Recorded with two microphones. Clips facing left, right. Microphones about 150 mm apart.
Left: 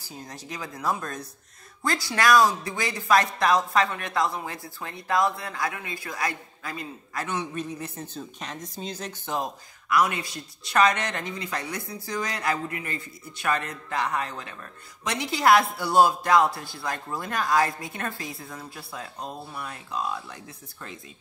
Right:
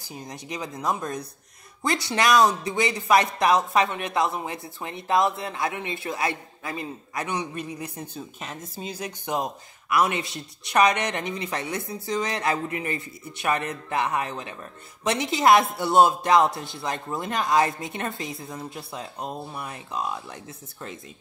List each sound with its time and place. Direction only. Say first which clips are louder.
0.1 s speech: right 3 dB; 15° right (ahead or behind)